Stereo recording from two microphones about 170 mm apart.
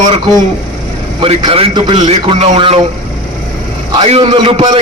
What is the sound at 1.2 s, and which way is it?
A man's voice, 30° right (ahead or behind).